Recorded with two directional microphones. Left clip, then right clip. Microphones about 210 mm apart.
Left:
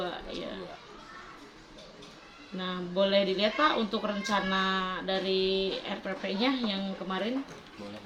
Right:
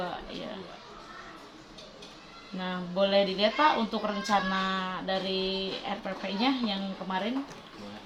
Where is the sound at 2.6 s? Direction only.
15° right (ahead or behind).